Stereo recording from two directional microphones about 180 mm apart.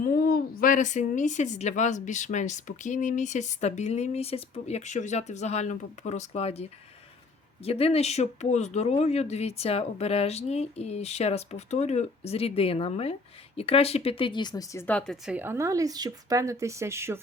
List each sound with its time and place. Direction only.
0.0 s a woman's voice: 55° left (ahead or behind); by 15.4 s centre (ahead or behind)
15.4 s a woman's voice: 15° right (ahead or behind)